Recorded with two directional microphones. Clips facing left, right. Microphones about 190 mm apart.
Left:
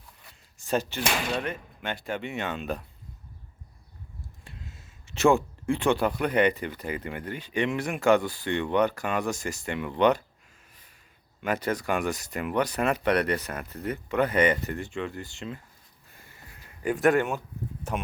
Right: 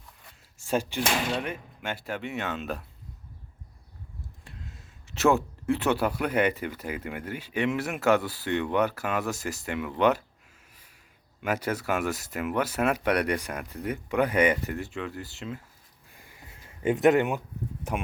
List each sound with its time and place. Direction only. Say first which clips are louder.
0.6 s speech: even; 10° right (ahead or behind)
4.4 s speech: even; centre (ahead or behind)
11.4 s speech: left 1 dB; 10° right (ahead or behind)
16.1 s a sound: right 1 dB; 15° right (ahead or behind)
16.6 s speech: right 2 dB; 20° right (ahead or behind)